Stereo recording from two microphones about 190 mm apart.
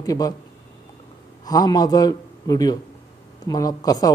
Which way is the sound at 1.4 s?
20° left (ahead or behind).